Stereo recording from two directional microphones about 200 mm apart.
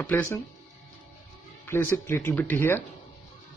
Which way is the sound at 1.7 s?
10° left (ahead or behind).